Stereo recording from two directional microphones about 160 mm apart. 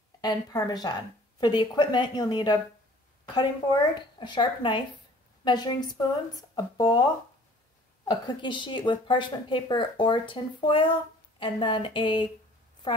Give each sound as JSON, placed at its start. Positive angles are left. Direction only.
{"t": 0.2, "sound": "a woman's voice", "side_deg": 25}
{"t": 8.1, "sound": "a woman's voice", "side_deg": 30}
{"t": 12.8, "sound": "a sound", "side_deg": 30}